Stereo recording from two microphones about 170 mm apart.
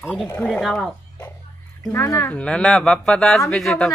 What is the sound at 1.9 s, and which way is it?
Speech, 20° left (ahead or behind).